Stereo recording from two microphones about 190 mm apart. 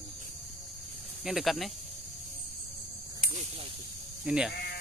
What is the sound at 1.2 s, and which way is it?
Speech, centre (ahead or behind).